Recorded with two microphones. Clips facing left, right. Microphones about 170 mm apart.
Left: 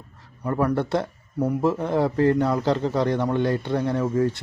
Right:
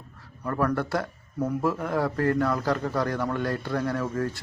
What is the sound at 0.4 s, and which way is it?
Speech, 20° left (ahead or behind).